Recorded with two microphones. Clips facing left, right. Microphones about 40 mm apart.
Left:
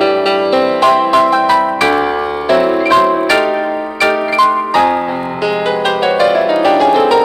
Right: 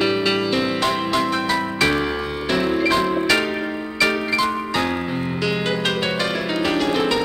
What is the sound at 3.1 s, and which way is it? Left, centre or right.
Tubular bells, centre.